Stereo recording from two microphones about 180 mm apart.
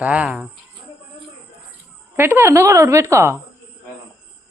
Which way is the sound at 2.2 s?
15° right (ahead or behind).